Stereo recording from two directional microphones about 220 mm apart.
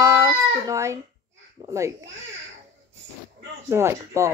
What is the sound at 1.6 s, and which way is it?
Babbling, 15° right (ahead or behind).